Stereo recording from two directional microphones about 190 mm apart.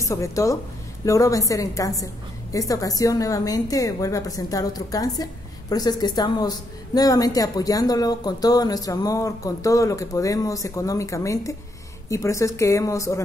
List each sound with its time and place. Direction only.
0.0 s a woman's voice: 15° left (ahead or behind)